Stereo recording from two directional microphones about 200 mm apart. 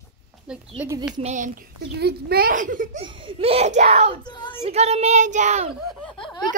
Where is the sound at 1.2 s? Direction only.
40° right (ahead or behind).